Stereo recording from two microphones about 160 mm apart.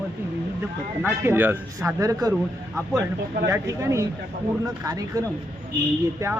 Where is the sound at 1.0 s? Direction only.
15° right (ahead or behind).